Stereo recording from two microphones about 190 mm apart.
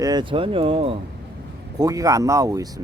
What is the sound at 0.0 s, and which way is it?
Speech, 20° right (ahead or behind).